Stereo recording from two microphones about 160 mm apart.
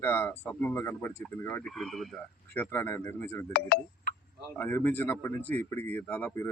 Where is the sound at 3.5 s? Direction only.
80° left.